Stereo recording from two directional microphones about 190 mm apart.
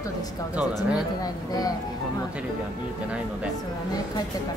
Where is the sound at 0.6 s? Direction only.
5° right (ahead or behind).